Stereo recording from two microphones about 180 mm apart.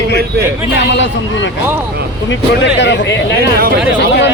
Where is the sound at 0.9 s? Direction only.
90° left.